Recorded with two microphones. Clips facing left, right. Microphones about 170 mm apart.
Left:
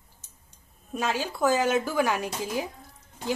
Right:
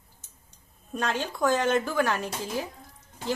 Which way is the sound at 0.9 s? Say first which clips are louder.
Left 1 dB; 5° left (ahead or behind).